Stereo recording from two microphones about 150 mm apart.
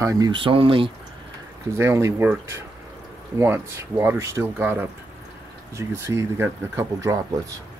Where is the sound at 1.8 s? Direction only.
20° right (ahead or behind).